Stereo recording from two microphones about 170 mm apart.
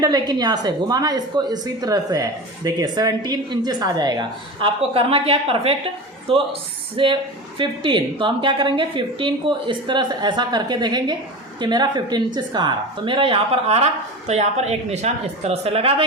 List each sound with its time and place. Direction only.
0.0 s a woman's voice: 25° right (ahead or behind)